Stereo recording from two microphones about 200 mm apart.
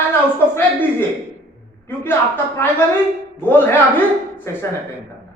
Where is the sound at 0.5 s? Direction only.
10° left (ahead or behind).